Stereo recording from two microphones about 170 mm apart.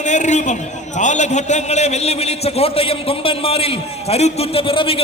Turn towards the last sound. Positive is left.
turn(degrees=30)  # may be behind; listen again after turning